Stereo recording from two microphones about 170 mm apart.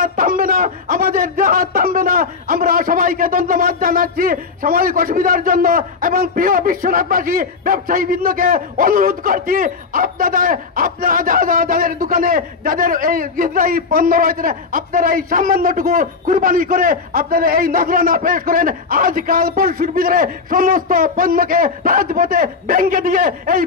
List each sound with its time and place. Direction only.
0.0 s speech: 55° right (ahead or behind)